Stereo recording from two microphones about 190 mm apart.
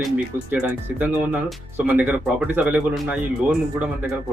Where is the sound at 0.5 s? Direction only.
10° right (ahead or behind).